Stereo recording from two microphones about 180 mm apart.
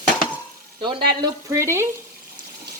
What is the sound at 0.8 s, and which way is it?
Speech, 25° right (ahead or behind).